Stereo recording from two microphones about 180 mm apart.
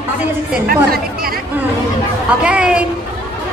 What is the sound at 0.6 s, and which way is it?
Speech, 55° right (ahead or behind).